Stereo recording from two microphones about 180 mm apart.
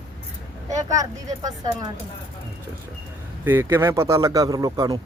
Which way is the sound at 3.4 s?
10° right (ahead or behind).